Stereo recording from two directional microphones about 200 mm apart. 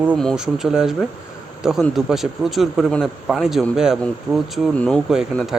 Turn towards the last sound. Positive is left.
turn(degrees=-5)  # may be behind; listen again after turning